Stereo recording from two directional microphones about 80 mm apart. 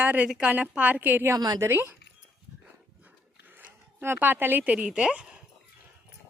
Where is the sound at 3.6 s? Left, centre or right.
Right.